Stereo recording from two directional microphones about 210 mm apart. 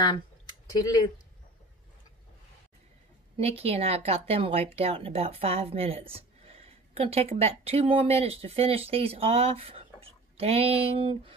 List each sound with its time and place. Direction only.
0.7 s speech: 15° left (ahead or behind)
3.3 s speech: 30° right (ahead or behind)